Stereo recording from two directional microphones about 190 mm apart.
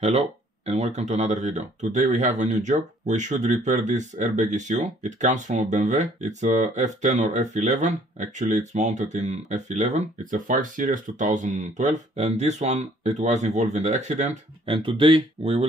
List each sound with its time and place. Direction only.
0.7 s speech: 35° right (ahead or behind)